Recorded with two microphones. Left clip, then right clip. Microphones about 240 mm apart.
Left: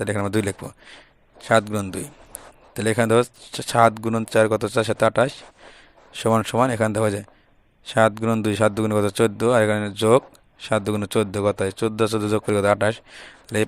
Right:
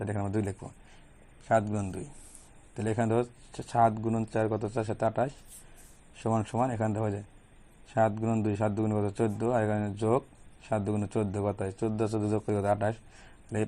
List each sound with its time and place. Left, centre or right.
0.0 s speech: left